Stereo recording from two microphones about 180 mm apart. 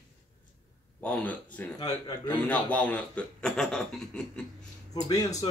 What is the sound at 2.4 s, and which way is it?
Speech, 5° left (ahead or behind).